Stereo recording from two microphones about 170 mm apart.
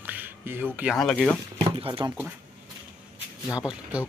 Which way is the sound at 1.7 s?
30° right (ahead or behind).